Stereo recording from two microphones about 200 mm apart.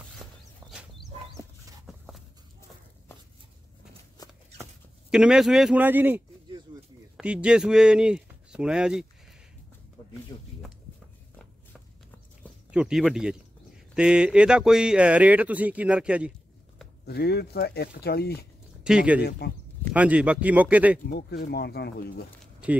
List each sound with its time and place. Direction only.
0.7 s a sound: centre (ahead or behind)
4.2 s shuffling cards: 20° left (ahead or behind)
5.1 s speech: 5° right (ahead or behind)
10.3 s a sound: 20° left (ahead or behind)
12.7 s speech: 5° right (ahead or behind)
17.0 s speech: 50° left (ahead or behind)
18.9 s speech: 5° right (ahead or behind)
19.2 s speech: 50° left (ahead or behind)
19.9 s speech: 5° right (ahead or behind)
21.1 s speech: 50° left (ahead or behind)
22.4 s a sound: 5° right (ahead or behind)